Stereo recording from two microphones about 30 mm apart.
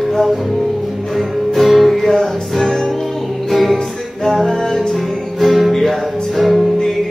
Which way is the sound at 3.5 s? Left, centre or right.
Centre.